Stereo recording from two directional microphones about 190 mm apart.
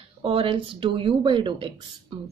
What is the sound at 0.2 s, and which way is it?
Speech, 30° right (ahead or behind).